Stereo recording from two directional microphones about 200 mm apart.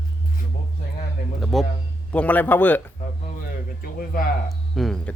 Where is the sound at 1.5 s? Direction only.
Centre (ahead or behind).